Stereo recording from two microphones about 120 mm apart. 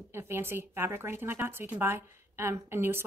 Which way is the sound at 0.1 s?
20° right (ahead or behind).